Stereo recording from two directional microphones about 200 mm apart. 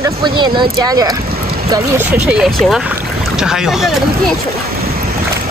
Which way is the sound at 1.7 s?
10° right (ahead or behind).